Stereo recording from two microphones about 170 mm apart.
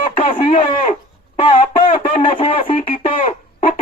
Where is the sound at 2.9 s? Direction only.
50° left (ahead or behind).